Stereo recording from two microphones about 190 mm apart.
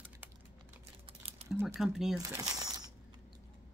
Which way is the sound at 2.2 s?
20° right (ahead or behind).